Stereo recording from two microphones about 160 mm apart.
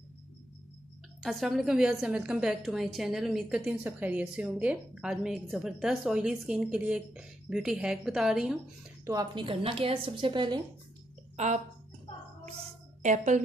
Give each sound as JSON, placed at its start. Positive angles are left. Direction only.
{"t": 1.2, "sound": "a woman's voice", "side_deg": 0}
{"t": 9.0, "sound": "a woman's voice", "side_deg": -25}
{"t": 11.3, "sound": "speech", "side_deg": -45}
{"t": 13.0, "sound": "a woman's voice", "side_deg": -50}